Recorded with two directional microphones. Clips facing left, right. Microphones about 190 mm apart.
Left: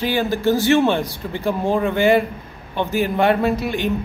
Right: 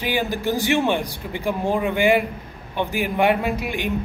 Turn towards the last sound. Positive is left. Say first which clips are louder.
# left 5 dB
turn(degrees=-15)  # may be behind; listen again after turning